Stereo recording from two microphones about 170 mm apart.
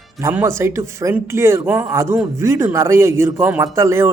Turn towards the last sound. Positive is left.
turn(degrees=-15)  # may be behind; listen again after turning